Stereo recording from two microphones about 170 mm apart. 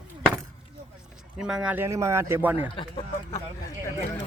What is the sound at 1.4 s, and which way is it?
Speech, 5° right (ahead or behind).